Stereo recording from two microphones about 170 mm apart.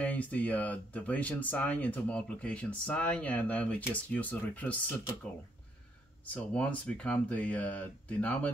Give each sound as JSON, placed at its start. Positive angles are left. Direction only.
{"t": 0.0, "sound": "speech", "side_deg": 10}
{"t": 6.3, "sound": "speech", "side_deg": 5}